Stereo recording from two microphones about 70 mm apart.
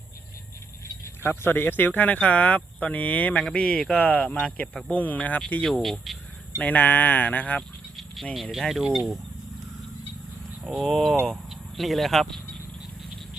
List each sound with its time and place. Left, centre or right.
1.0 s speech: left
3.6 s speech: centre
3.9 s speech: left
5.6 s speech: centre
6.6 s speech: left
7.9 s a sound: centre
8.5 s speech: centre
10.6 s speech: centre